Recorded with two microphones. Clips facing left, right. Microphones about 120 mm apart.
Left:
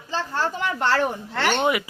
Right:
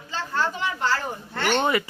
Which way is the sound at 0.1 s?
40° left (ahead or behind).